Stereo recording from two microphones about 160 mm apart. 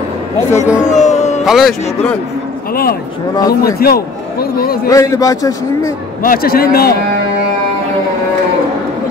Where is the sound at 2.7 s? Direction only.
70° left (ahead or behind).